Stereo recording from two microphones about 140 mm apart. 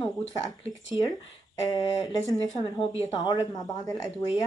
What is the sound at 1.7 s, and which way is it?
Speech, 30° left (ahead or behind).